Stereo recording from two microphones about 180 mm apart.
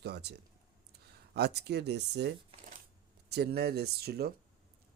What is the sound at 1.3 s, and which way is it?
Speech, 65° right (ahead or behind).